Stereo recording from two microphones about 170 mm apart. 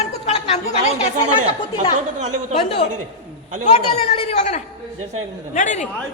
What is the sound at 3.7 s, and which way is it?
Speech, 35° left (ahead or behind).